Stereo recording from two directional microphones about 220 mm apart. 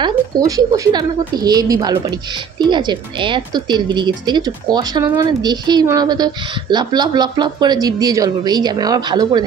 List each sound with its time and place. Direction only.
0.0 s a woman's voice: 15° right (ahead or behind)